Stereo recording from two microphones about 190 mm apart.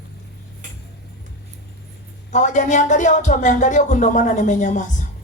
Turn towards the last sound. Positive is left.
turn(degrees=40)  # may be behind; listen again after turning